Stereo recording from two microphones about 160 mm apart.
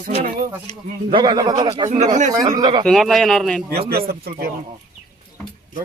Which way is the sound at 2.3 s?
25° right (ahead or behind).